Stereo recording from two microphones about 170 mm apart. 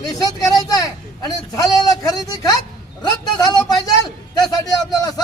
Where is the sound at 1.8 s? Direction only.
20° left (ahead or behind).